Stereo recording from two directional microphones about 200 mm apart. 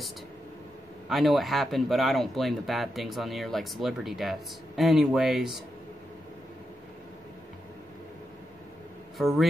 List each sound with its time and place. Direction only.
1.0 s speech: centre (ahead or behind)
9.2 s speech: centre (ahead or behind)